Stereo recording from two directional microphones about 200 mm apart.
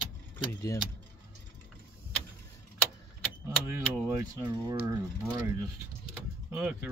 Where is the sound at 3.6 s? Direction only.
10° right (ahead or behind).